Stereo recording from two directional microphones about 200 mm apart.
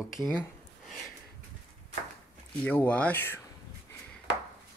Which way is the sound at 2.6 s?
5° left (ahead or behind).